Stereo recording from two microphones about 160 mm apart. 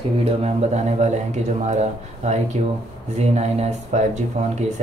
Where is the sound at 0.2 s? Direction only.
40° right (ahead or behind).